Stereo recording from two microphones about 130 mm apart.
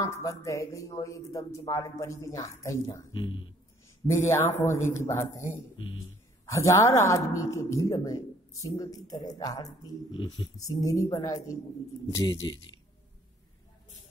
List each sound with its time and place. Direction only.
0.0 s speech: 25° left (ahead or behind)
3.1 s speech: 40° left (ahead or behind)
4.1 s speech: 20° left (ahead or behind)
6.5 s speech: 25° left (ahead or behind)